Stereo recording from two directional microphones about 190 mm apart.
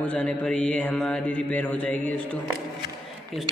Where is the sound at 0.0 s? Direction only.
10° left (ahead or behind).